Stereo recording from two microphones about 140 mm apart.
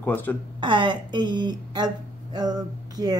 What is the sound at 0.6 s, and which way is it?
Speech, 35° right (ahead or behind).